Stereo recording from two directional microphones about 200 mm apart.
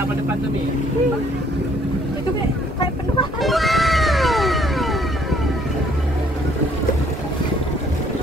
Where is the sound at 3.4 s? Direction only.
Centre (ahead or behind).